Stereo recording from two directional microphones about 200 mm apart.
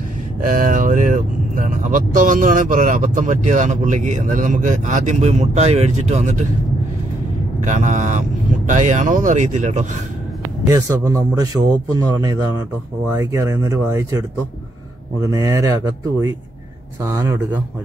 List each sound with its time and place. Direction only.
0.4 s speech: 40° right (ahead or behind)
7.6 s speech: 35° right (ahead or behind)
10.7 s speech: 15° right (ahead or behind)
15.2 s speech: 15° right (ahead or behind)
17.0 s speech: 15° right (ahead or behind)